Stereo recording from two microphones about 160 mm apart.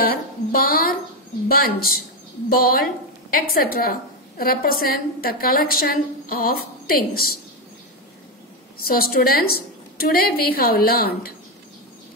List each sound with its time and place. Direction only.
0.0 s a woman's voice: 65° left (ahead or behind)
8.8 s a woman's voice: 65° left (ahead or behind)